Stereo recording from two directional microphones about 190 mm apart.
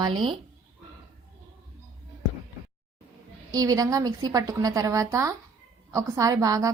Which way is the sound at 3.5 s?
20° right (ahead or behind).